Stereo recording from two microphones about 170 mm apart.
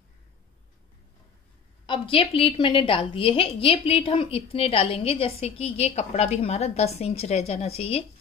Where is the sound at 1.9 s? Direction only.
30° left (ahead or behind).